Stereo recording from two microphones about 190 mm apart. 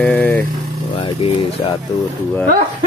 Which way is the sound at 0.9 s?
30° left (ahead or behind).